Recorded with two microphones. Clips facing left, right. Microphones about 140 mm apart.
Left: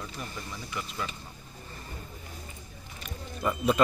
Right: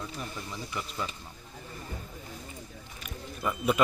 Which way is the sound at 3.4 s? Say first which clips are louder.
Left 2 dB; centre (ahead or behind).